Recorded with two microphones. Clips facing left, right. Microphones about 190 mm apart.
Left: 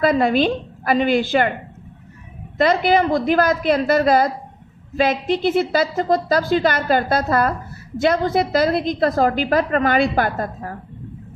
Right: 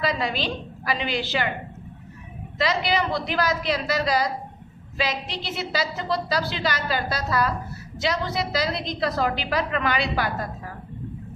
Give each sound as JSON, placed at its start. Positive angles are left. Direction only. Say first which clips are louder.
{"t": 0.0, "sound": "a woman's voice", "louder": "left 10 dB", "side_deg": 50}
{"t": 2.6, "sound": "a woman's voice", "louder": "left 8 dB", "side_deg": 50}